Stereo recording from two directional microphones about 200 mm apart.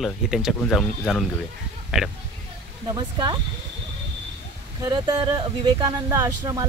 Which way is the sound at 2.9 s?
20° right (ahead or behind).